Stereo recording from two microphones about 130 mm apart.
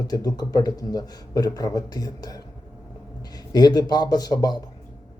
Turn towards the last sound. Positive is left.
turn(degrees=30)  # may be behind; listen again after turning